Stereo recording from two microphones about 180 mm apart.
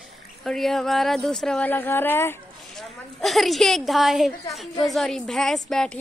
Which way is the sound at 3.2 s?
Centre (ahead or behind).